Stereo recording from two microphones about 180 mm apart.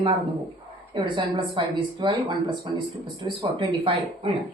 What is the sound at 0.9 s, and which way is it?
A woman's voice, 25° right (ahead or behind).